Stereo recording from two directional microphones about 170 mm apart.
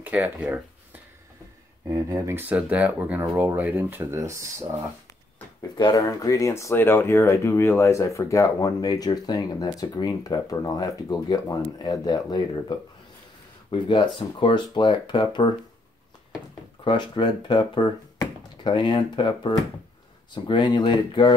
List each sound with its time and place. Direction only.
0.0 s a sound: 10° right (ahead or behind)
1.9 s speech: 15° right (ahead or behind)
5.8 s speech: 25° left (ahead or behind)
16.8 s speech: 25° left (ahead or behind)